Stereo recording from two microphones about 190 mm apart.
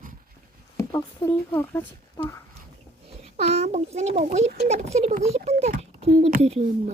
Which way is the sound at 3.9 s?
35° right (ahead or behind).